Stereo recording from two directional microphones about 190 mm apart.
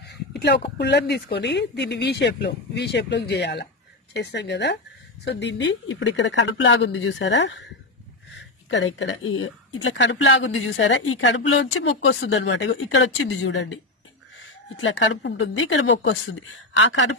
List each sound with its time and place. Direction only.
0.3 s a sound: 65° left (ahead or behind)
0.7 s speech: 60° left (ahead or behind)
8.6 s speech: 85° left
14.8 s speech: 90° left; by 17.1 s 75° left (ahead or behind)